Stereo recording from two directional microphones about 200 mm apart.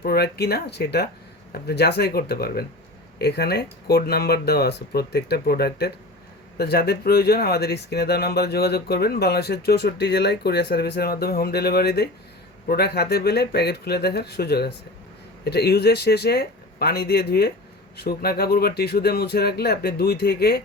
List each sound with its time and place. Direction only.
0.0 s speech: 50° left (ahead or behind)